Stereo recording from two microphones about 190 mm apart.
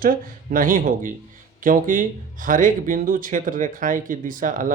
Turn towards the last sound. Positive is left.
turn(degrees=-45)  # may be behind; listen again after turning